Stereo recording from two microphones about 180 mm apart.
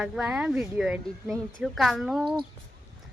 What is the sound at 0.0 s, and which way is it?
Speech, 5° right (ahead or behind).